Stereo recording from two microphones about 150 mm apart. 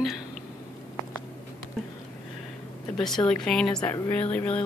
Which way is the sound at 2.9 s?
5° left (ahead or behind).